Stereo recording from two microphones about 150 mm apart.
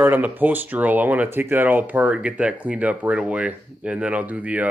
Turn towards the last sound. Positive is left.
turn(degrees=-10)  # may be behind; listen again after turning